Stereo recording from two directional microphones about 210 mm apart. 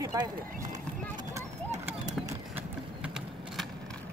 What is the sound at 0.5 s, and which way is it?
Speech, 40° right (ahead or behind).